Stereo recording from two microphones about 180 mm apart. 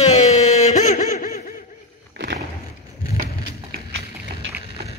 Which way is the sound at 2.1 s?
70° right (ahead or behind).